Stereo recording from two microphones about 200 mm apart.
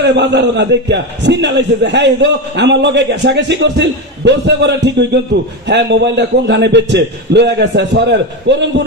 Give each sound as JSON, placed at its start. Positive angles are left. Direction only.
{"t": 0.0, "sound": "a man's voice", "side_deg": -60}